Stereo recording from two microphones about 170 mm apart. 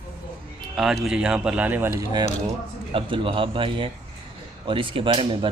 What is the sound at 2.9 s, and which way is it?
A man's voice, 30° right (ahead or behind).